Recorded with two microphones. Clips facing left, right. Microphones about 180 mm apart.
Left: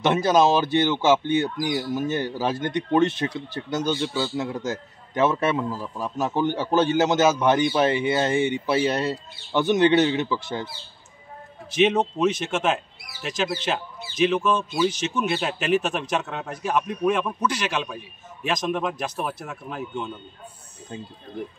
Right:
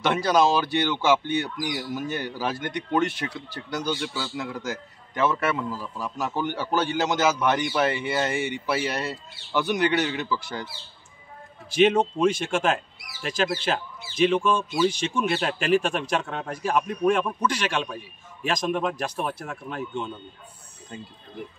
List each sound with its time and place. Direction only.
0.0 s speech: 20° left (ahead or behind)
12.2 s a man's voice: 5° left (ahead or behind)